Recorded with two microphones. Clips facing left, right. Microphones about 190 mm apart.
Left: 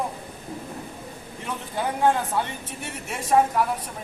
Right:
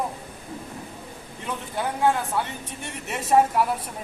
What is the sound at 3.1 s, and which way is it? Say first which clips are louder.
Speech: right 1 dB; centre (ahead or behind).